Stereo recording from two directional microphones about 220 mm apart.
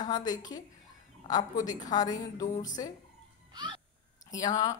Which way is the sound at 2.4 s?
35° left (ahead or behind).